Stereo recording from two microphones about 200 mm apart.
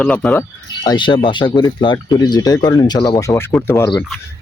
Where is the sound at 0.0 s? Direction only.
5° left (ahead or behind).